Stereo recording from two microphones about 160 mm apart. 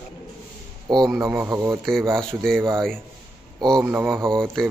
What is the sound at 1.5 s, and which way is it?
Speech, 20° right (ahead or behind).